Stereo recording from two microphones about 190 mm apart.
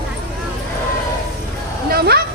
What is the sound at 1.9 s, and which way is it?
Bow-wow, 55° right (ahead or behind).